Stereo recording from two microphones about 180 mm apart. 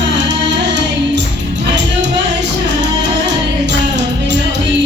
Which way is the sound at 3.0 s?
75° right (ahead or behind).